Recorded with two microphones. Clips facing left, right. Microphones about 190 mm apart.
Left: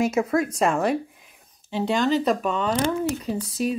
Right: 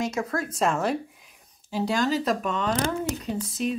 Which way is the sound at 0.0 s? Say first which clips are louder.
Left 6 dB; 25° left (ahead or behind).